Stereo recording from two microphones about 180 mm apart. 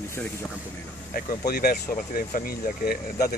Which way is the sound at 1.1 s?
55° left (ahead or behind).